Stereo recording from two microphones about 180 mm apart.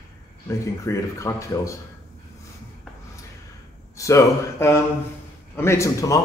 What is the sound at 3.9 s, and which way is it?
A man's voice, 15° left (ahead or behind).